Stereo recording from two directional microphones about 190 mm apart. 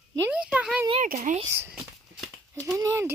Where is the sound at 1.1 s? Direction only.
40° right (ahead or behind).